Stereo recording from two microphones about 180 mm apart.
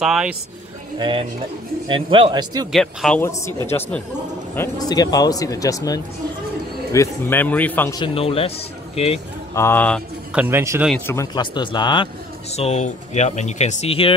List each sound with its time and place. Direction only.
0.0 s speech: 5° right (ahead or behind)
0.9 s a man's voice: 25° right (ahead or behind)
2.7 s speech: centre (ahead or behind)
7.9 s speech: 30° left (ahead or behind)
9.6 s speech: 10° left (ahead or behind)
10.3 s a man's voice: 10° right (ahead or behind)
11.1 s speech: 20° left (ahead or behind)
12.5 s speech: 40° left (ahead or behind)